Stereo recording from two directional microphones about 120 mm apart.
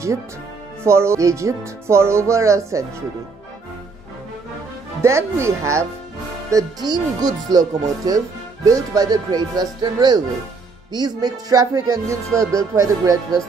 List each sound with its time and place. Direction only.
0.8 s speech: 20° right (ahead or behind)
5.0 s speech: 25° right (ahead or behind)